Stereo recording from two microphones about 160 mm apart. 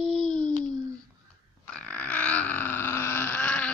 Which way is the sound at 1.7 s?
10° left (ahead or behind).